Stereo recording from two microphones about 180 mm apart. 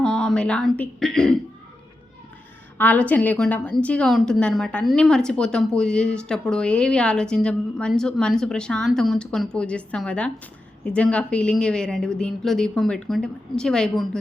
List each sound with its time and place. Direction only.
0.0 s a woman's voice: 5° left (ahead or behind)
2.7 s a woman's voice: 10° left (ahead or behind)